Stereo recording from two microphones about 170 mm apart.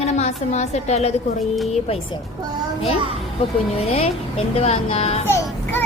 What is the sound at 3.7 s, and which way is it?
A woman's voice, 35° left (ahead or behind).